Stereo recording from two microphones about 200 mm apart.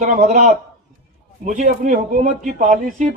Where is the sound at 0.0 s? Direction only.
35° right (ahead or behind).